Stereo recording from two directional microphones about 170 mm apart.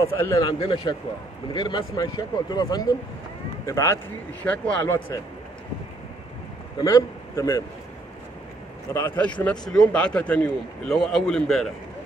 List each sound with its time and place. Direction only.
0.2 s speech: 20° left (ahead or behind)
0.6 s speech: 30° left (ahead or behind)
4.4 s speech: 10° left (ahead or behind)
6.8 s a man's voice: 20° left (ahead or behind)
8.9 s a man's voice: 15° left (ahead or behind)